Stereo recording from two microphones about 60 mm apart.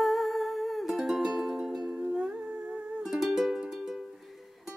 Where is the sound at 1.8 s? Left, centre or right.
Centre.